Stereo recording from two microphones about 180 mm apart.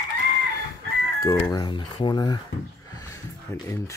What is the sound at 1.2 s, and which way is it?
Speech, 20° left (ahead or behind).